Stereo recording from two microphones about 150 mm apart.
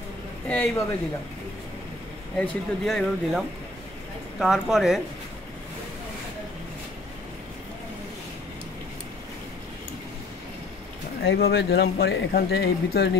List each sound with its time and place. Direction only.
0.5 s a man's voice: 10° left (ahead or behind)
2.3 s speech: 5° left (ahead or behind)
11.3 s speech: 90° left